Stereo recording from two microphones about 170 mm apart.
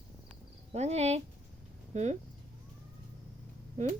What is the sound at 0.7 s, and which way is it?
Speech, 40° right (ahead or behind).